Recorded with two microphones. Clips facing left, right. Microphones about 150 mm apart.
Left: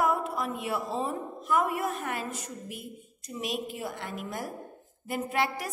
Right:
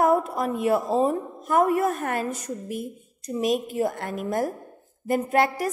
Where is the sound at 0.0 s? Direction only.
45° right (ahead or behind).